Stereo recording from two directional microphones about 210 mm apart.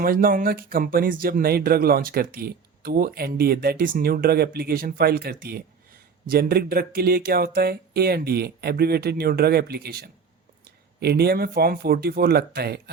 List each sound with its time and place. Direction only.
0.0 s speech: 45° right (ahead or behind)